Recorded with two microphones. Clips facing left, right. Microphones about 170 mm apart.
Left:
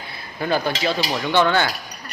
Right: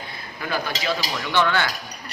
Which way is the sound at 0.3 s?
30° left (ahead or behind).